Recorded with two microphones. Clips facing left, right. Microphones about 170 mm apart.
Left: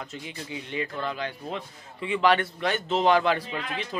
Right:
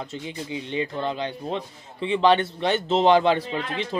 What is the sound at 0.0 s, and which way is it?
Speech, 25° right (ahead or behind).